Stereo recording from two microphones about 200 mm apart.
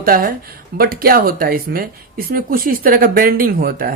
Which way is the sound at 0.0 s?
45° right (ahead or behind).